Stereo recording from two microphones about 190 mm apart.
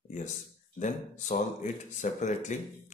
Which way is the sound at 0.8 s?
40° left (ahead or behind).